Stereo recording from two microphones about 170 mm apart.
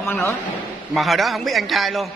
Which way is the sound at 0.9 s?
Centre (ahead or behind).